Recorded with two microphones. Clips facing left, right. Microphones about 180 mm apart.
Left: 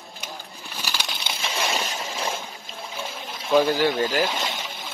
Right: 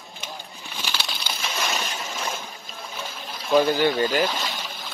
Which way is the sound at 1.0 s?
20° left (ahead or behind).